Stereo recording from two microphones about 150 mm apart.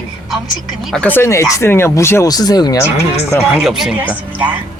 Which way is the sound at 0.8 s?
5° left (ahead or behind).